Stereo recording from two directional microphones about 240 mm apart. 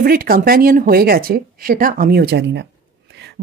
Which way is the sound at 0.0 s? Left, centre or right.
Right.